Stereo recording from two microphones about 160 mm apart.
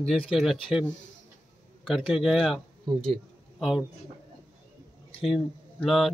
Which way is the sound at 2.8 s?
35° right (ahead or behind).